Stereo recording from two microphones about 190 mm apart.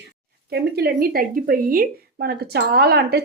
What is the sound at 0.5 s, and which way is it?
A woman's voice, 55° right (ahead or behind).